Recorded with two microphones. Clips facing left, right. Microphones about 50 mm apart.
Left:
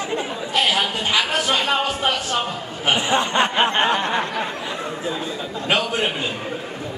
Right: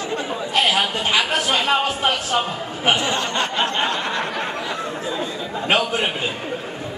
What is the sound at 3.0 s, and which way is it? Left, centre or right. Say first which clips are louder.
Speech: left 3 dB; left.